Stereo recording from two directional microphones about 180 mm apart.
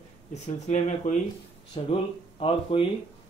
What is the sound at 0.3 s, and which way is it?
Speech, 40° left (ahead or behind).